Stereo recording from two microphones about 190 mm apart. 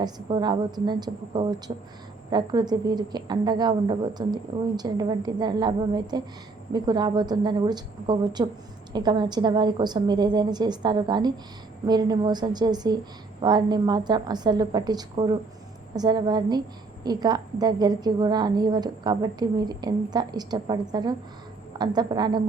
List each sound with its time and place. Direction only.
0.0 s a woman's voice: 20° right (ahead or behind)